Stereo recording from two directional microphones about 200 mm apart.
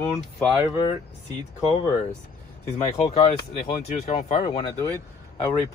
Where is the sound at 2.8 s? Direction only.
30° left (ahead or behind).